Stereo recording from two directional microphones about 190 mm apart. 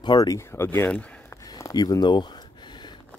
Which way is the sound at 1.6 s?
20° left (ahead or behind).